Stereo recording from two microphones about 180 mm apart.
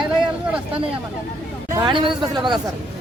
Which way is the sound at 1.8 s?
25° right (ahead or behind).